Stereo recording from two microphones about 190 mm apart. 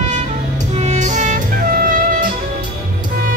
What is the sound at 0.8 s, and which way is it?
Music, 40° right (ahead or behind).